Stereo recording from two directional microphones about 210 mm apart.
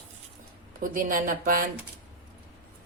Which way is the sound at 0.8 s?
40° right (ahead or behind).